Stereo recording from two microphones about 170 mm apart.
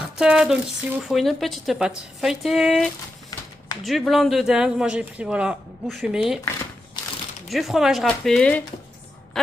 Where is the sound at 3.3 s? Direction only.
20° left (ahead or behind).